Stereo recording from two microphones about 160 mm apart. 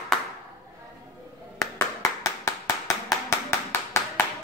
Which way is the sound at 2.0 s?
20° left (ahead or behind).